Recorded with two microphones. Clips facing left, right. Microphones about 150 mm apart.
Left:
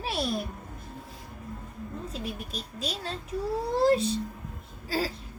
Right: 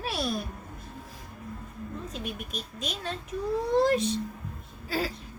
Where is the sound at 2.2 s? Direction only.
30° left (ahead or behind).